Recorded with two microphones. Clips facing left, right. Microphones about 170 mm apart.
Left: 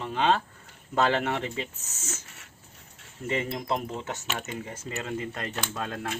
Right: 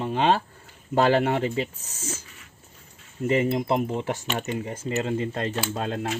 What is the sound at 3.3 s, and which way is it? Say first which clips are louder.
Speech: right 7 dB; 30° right (ahead or behind).